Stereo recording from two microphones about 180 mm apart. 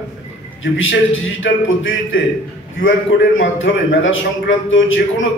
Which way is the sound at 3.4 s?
90° left.